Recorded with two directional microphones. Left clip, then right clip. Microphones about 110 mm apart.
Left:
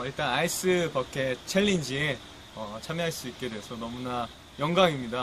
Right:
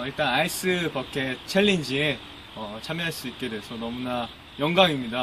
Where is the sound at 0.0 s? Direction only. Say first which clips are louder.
Right 4 dB; 35° left (ahead or behind).